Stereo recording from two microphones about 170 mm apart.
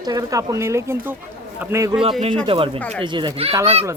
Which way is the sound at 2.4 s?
30° right (ahead or behind).